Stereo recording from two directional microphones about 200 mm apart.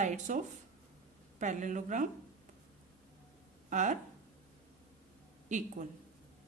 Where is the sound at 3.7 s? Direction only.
40° right (ahead or behind).